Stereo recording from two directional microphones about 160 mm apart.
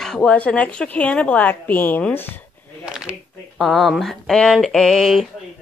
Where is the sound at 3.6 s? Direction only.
Centre (ahead or behind).